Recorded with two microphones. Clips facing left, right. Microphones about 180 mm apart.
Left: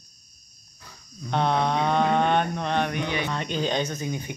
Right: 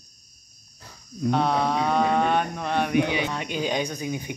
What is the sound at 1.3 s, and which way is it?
Mantra, 5° right (ahead or behind).